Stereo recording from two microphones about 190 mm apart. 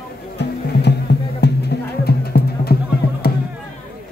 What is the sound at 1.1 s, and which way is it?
Music, 60° left (ahead or behind).